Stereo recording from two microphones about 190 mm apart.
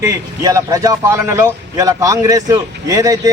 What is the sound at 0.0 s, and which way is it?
A man's voice, 20° right (ahead or behind).